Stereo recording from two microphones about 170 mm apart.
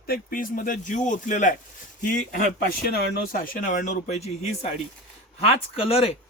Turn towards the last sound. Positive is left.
turn(degrees=35)  # may be behind; listen again after turning